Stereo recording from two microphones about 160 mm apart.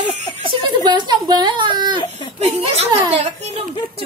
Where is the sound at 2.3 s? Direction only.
40° right (ahead or behind).